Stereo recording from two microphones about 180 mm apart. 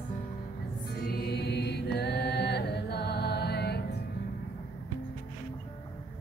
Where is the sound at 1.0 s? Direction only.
60° left (ahead or behind).